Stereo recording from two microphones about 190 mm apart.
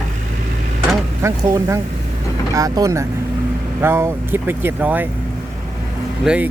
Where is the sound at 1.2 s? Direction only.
15° right (ahead or behind).